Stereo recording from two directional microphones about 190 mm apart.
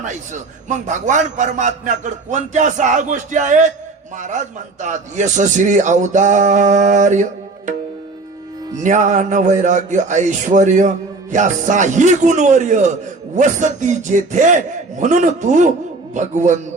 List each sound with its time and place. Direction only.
0.0 s a man's voice: 40° right (ahead or behind)
8.8 s a man's voice: 40° right (ahead or behind)